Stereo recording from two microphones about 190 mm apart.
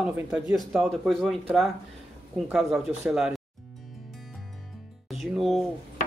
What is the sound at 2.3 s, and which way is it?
Speech, centre (ahead or behind).